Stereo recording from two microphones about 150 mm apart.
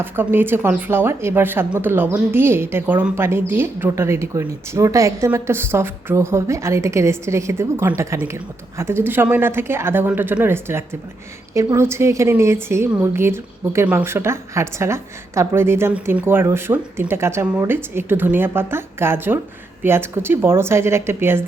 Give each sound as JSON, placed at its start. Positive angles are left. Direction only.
{"t": 0.0, "sound": "speech", "side_deg": -15}